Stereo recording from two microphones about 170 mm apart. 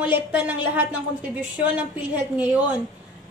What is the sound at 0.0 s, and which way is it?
A woman's voice, 10° right (ahead or behind).